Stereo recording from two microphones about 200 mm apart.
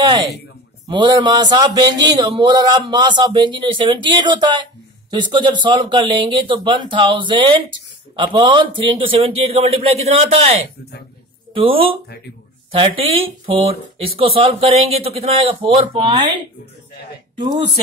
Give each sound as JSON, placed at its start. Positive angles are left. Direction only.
{"t": 0.8, "sound": "a man's voice", "side_deg": -20}